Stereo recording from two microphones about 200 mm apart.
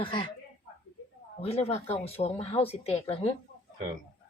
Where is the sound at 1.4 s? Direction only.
30° left (ahead or behind).